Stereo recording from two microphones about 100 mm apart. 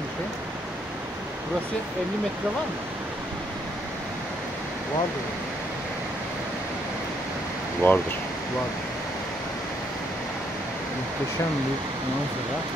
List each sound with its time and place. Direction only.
7.8 s speech: 25° left (ahead or behind)